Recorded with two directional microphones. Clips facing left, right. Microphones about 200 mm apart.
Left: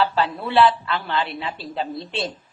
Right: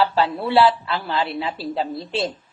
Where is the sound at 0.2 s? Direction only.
25° right (ahead or behind).